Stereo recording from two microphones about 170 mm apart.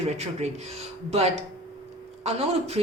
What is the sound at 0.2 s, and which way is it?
A woman's voice, 40° right (ahead or behind).